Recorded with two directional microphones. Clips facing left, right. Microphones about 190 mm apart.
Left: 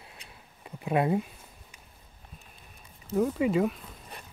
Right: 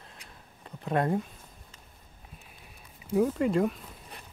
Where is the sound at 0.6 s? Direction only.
10° left (ahead or behind).